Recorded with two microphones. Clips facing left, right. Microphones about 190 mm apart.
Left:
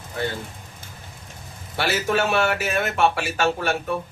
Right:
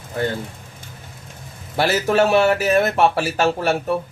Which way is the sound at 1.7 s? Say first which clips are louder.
Right 5 dB; 40° right (ahead or behind).